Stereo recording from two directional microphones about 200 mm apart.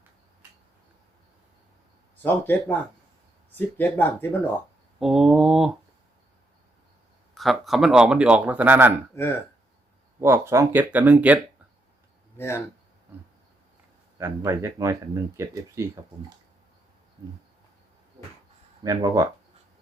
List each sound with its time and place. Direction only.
2.2 s speech: 10° left (ahead or behind)
4.9 s speech: centre (ahead or behind)
7.3 s speech: centre (ahead or behind)
9.1 s speech: 10° left (ahead or behind)
10.2 s speech: 15° right (ahead or behind)
12.4 s speech: 15° left (ahead or behind)
14.2 s speech: 15° right (ahead or behind)
18.8 s speech: 20° right (ahead or behind)